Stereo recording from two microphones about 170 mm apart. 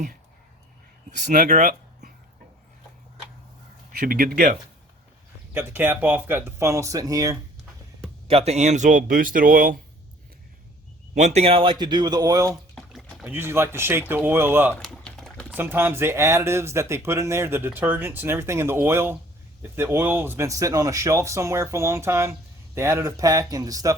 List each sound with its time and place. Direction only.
1.3 s speech: 50° right (ahead or behind)
3.9 s speech: 55° right (ahead or behind)
5.5 s speech: 10° right (ahead or behind)
8.3 s speech: 35° right (ahead or behind); by 9.7 s 55° right (ahead or behind)
11.1 s speech: 45° right (ahead or behind); by 12.5 s 20° right (ahead or behind)
12.7 s pour: centre (ahead or behind)
13.2 s speech: 10° right (ahead or behind)
14.8 s typing: centre (ahead or behind)
15.5 s speech: 15° right (ahead or behind)